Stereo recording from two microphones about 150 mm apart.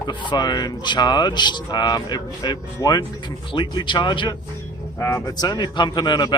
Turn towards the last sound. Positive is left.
turn(degrees=30)  # may be behind; listen again after turning